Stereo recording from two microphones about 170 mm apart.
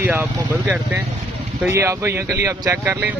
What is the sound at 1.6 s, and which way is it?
Speech, 15° right (ahead or behind).